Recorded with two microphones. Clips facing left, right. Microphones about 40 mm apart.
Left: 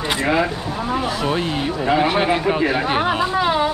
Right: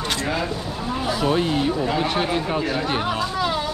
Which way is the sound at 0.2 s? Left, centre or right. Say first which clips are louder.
Left 6 dB; left.